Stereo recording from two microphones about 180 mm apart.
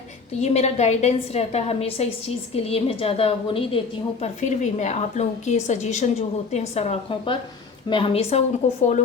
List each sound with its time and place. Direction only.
0.4 s a woman's voice: 35° left (ahead or behind)